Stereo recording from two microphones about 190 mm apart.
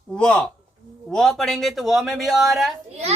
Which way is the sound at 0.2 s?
5° left (ahead or behind).